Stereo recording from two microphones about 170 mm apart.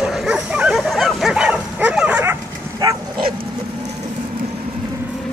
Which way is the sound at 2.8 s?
25° right (ahead or behind).